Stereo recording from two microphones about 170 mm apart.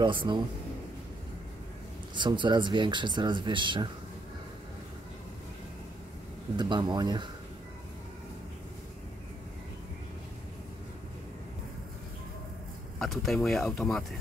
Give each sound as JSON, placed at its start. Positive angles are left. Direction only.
{"t": 0.0, "sound": "speech", "side_deg": -30}
{"t": 2.1, "sound": "speech", "side_deg": -25}
{"t": 6.5, "sound": "speech", "side_deg": -25}
{"t": 13.0, "sound": "speech", "side_deg": 0}